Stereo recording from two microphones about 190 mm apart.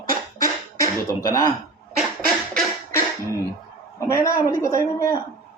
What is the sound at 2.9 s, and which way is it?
Beatboxing, 15° left (ahead or behind).